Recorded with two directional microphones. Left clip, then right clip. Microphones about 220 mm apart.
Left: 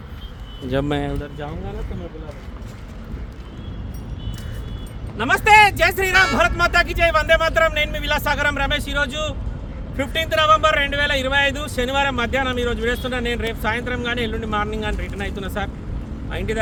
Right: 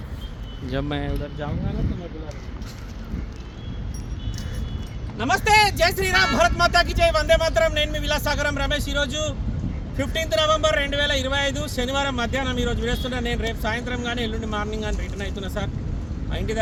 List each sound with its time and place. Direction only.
0.7 s speech: 50° left (ahead or behind)
5.1 s speech: 10° left (ahead or behind)